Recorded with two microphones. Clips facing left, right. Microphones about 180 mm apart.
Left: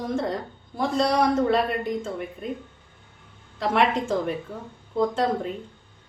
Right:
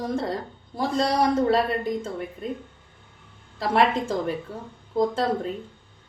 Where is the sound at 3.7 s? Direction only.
35° right (ahead or behind).